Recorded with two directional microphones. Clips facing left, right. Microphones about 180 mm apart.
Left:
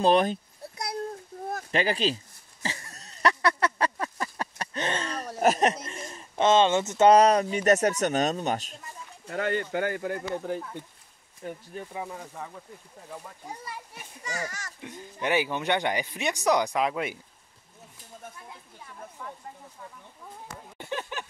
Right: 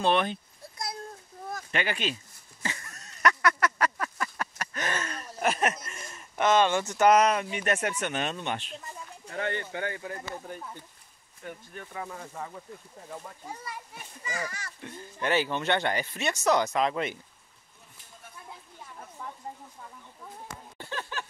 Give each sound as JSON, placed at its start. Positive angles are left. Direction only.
{"t": 0.0, "sound": "speech", "side_deg": 40}
{"t": 1.7, "sound": "speech", "side_deg": 35}
{"t": 2.6, "sound": "a sound", "side_deg": 30}
{"t": 5.4, "sound": "speech", "side_deg": 35}
{"t": 11.7, "sound": "speech", "side_deg": 20}
{"t": 12.4, "sound": "speech", "side_deg": 0}
{"t": 14.2, "sound": "a child's voice", "side_deg": 45}
{"t": 14.8, "sound": "speech", "side_deg": 15}
{"t": 20.7, "sound": "a sound", "side_deg": 15}